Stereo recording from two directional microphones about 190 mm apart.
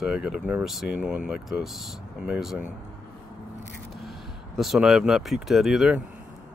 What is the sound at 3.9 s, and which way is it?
Speech, centre (ahead or behind).